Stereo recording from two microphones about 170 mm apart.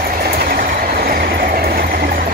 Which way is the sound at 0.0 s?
60° right (ahead or behind).